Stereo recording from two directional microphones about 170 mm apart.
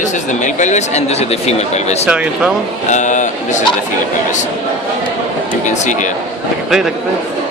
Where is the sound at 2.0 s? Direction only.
5° right (ahead or behind).